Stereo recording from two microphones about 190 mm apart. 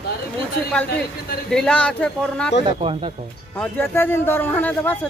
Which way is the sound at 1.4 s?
5° left (ahead or behind).